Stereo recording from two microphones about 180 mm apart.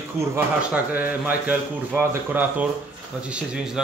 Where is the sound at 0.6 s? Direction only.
10° right (ahead or behind).